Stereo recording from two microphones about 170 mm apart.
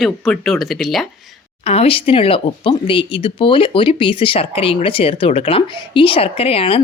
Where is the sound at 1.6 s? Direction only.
35° left (ahead or behind).